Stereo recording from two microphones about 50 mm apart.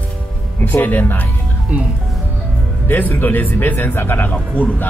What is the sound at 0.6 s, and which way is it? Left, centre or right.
Speech, left.